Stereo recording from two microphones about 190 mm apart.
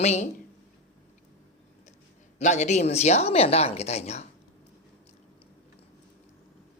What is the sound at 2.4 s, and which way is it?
A man's voice, 40° left (ahead or behind).